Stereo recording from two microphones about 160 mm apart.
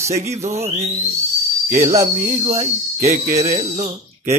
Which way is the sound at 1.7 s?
50° right (ahead or behind).